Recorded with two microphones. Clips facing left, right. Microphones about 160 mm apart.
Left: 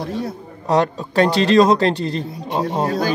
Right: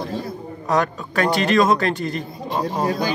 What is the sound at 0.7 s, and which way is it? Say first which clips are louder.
A man's voice: left 3 dB; 30° left (ahead or behind).